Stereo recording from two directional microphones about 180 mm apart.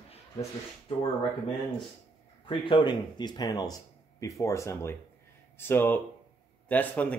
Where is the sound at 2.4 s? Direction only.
30° left (ahead or behind).